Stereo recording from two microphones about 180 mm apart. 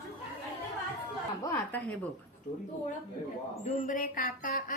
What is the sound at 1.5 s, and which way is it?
Speech, 10° left (ahead or behind).